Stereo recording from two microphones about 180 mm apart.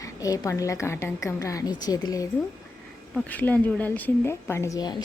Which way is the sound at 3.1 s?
10° left (ahead or behind).